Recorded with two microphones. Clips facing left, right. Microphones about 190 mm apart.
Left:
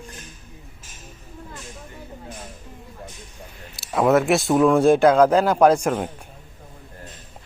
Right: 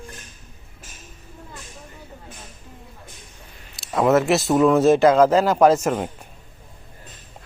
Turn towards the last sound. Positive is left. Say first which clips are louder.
# even
turn(degrees=0)  # may be behind; listen again after turning